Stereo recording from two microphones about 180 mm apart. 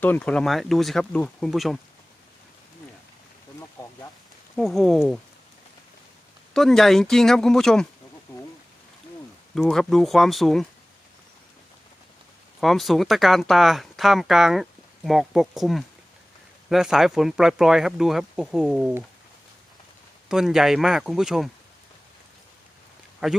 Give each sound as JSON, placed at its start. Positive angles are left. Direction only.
{"t": 0.0, "sound": "speech", "side_deg": 5}
{"t": 3.6, "sound": "a sound", "side_deg": 15}
{"t": 4.5, "sound": "speech", "side_deg": 0}
{"t": 6.5, "sound": "speech", "side_deg": 0}
{"t": 8.3, "sound": "rain", "side_deg": 10}
{"t": 9.6, "sound": "speech", "side_deg": 0}
{"t": 12.5, "sound": "speech", "side_deg": 0}
{"t": 20.2, "sound": "speech", "side_deg": -5}
{"t": 23.2, "sound": "speech", "side_deg": -5}